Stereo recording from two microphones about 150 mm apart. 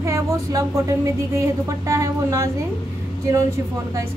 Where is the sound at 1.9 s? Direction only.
20° right (ahead or behind).